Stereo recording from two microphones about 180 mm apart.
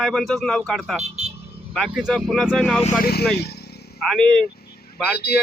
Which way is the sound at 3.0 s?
60° left (ahead or behind).